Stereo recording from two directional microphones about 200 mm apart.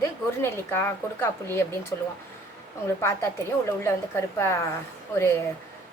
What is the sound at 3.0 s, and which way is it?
Speech, 10° left (ahead or behind).